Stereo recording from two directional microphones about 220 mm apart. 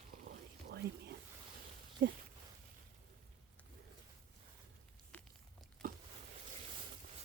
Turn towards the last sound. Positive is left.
turn(degrees=-40)  # may be behind; listen again after turning